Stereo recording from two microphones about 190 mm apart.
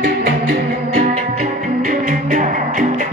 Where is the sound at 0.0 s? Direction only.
50° right (ahead or behind).